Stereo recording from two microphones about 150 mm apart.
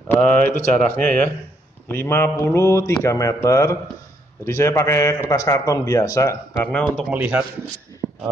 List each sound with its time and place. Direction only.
0.1 s a man's voice: 10° left (ahead or behind)
7.1 s speech: 10° right (ahead or behind)
8.0 s a sound: centre (ahead or behind)